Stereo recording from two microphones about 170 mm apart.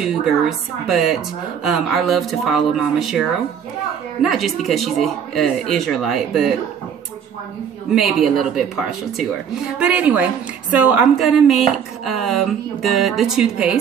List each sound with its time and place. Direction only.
0.0 s speech: centre (ahead or behind)
7.9 s a woman's voice: centre (ahead or behind)